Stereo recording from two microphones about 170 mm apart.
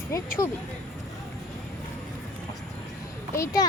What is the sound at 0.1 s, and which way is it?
Speech, 15° left (ahead or behind).